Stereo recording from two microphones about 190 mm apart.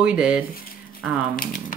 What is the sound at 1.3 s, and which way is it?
Speech, 50° left (ahead or behind).